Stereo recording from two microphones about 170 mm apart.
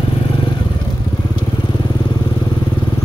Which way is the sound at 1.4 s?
25° left (ahead or behind).